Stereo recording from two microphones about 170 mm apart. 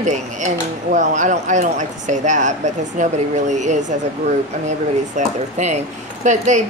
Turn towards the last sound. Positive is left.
turn(degrees=-45)  # may be behind; listen again after turning